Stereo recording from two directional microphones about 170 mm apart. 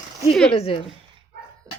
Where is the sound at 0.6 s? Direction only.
35° left (ahead or behind).